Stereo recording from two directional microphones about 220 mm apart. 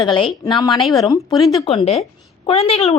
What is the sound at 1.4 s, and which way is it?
Speech, centre (ahead or behind).